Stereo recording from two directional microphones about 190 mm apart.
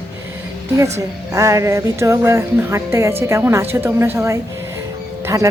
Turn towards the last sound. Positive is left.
turn(degrees=-15)  # may be behind; listen again after turning